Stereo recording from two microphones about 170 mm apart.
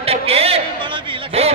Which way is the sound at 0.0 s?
35° right (ahead or behind).